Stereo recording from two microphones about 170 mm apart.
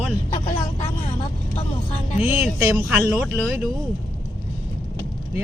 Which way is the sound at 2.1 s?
10° right (ahead or behind).